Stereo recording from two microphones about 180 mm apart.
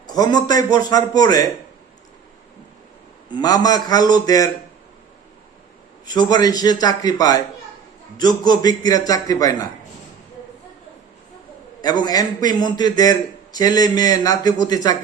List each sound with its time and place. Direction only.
0.1 s a man's voice: 20° left (ahead or behind)
3.2 s a man's voice: 25° left (ahead or behind)
6.1 s a man's voice: 20° left (ahead or behind)
11.8 s a man's voice: 20° left (ahead or behind)